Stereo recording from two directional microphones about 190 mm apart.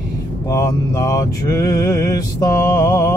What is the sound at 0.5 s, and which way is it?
Mantra, 15° left (ahead or behind).